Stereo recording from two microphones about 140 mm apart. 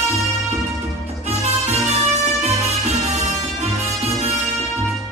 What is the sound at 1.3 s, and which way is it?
Music, 50° right (ahead or behind).